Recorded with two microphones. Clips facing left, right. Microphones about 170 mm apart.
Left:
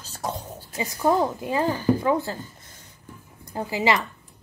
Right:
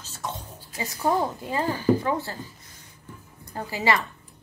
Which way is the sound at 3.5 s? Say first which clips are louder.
Left 2 dB; 20° left (ahead or behind).